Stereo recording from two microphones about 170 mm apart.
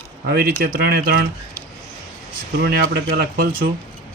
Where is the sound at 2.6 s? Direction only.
80° right; by 3.5 s 60° right (ahead or behind).